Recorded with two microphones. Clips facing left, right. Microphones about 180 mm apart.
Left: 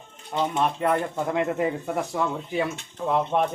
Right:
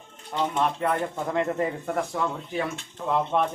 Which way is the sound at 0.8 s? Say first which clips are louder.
Left 2 dB; 10° left (ahead or behind).